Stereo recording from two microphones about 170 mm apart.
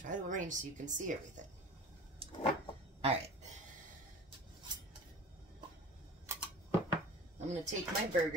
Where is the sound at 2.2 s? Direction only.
35° right (ahead or behind).